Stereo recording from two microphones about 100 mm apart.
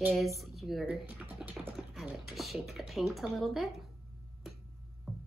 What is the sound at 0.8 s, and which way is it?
Typing, 15° right (ahead or behind).